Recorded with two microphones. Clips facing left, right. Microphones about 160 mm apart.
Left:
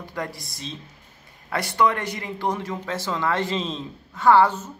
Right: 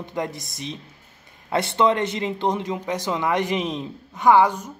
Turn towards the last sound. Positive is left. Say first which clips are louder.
# even
turn(degrees=-15)  # may be behind; listen again after turning